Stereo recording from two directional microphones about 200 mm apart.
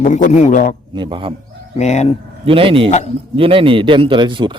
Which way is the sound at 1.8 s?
35° left (ahead or behind).